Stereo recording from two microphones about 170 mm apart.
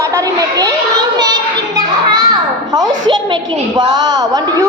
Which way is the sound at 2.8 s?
25° right (ahead or behind).